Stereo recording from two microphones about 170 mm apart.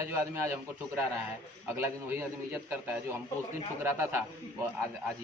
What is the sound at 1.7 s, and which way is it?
Speech, 15° right (ahead or behind).